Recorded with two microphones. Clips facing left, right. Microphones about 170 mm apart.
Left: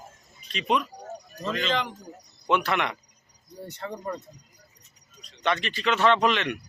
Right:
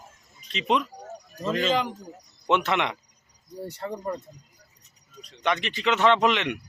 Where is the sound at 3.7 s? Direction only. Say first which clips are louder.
Right 2 dB; 10° right (ahead or behind).